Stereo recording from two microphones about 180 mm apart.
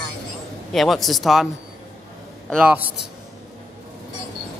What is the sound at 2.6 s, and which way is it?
Speech, 5° right (ahead or behind).